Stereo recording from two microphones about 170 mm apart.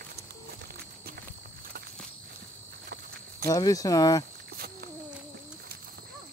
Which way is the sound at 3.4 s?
20° left (ahead or behind).